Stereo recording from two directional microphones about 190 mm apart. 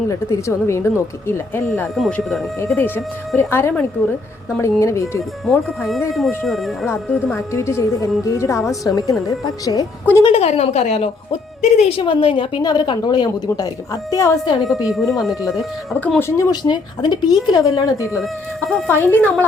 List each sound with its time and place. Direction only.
0.1 s a woman's voice: 15° left (ahead or behind)
2.0 s a woman's voice: centre (ahead or behind)
5.5 s speech: centre (ahead or behind)
6.8 s a woman's voice: 10° left (ahead or behind)
10.3 s a woman's voice: 35° left (ahead or behind); by 14.5 s 15° left (ahead or behind)
14.8 s a woman's voice: centre (ahead or behind); by 18.2 s 15° left (ahead or behind)
18.2 s speech: centre (ahead or behind)
18.9 s a woman's voice: 10° left (ahead or behind)